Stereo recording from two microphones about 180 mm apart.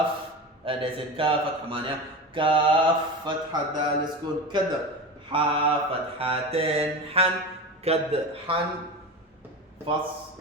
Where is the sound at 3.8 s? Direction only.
25° right (ahead or behind).